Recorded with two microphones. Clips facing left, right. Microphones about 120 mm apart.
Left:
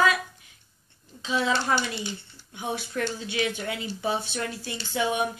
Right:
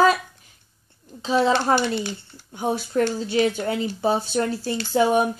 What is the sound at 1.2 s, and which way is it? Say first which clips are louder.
Speech: right 7 dB; 35° right (ahead or behind).